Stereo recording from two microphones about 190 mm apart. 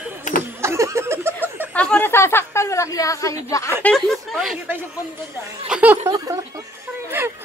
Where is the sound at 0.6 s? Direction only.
15° right (ahead or behind).